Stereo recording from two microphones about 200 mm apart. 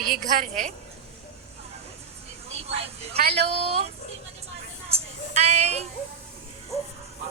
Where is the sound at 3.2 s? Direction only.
55° right (ahead or behind).